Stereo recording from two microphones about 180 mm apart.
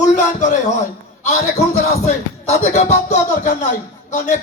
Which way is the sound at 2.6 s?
40° left (ahead or behind).